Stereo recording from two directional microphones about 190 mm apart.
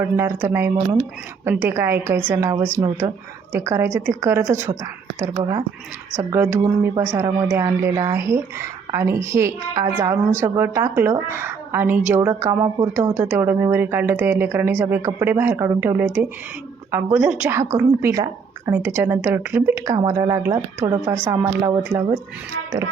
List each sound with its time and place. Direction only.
0.0 s a woman's voice: 15° right (ahead or behind)
6.1 s a woman's voice: 10° right (ahead or behind)